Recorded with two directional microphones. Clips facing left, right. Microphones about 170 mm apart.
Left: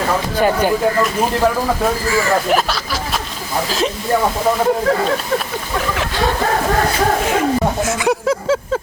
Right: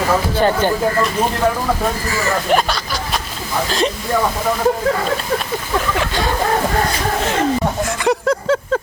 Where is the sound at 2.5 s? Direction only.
5° left (ahead or behind).